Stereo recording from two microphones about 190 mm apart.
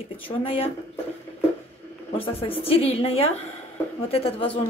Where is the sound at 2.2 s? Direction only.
30° left (ahead or behind).